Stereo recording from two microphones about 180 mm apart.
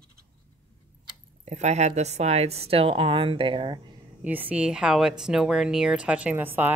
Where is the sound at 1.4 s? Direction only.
40° right (ahead or behind).